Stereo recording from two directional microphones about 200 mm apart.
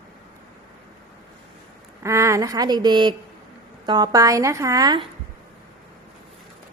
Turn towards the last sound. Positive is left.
turn(degrees=-20)  # may be behind; listen again after turning